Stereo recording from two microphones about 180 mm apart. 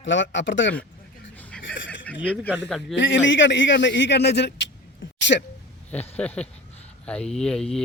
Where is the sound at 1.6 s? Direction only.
90° left.